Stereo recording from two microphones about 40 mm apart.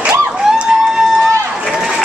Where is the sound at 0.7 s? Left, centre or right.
Centre.